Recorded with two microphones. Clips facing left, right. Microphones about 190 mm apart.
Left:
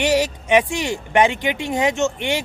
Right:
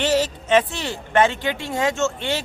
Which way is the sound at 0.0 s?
15° left (ahead or behind).